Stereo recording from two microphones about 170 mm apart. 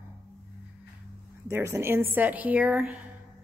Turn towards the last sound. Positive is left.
turn(degrees=-10)  # may be behind; listen again after turning